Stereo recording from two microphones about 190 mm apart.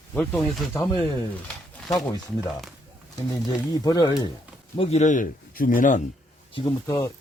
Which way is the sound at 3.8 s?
20° left (ahead or behind).